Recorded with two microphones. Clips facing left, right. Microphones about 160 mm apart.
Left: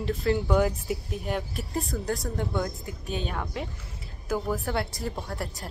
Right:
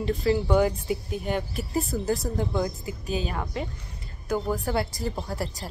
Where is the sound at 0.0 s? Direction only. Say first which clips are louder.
Right 2 dB; centre (ahead or behind).